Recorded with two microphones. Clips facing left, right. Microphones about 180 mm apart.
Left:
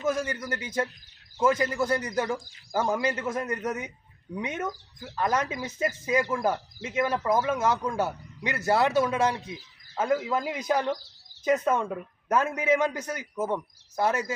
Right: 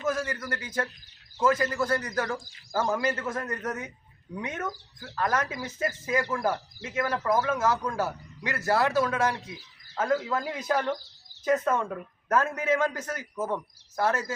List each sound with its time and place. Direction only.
0.0 s a man's voice: 20° left (ahead or behind)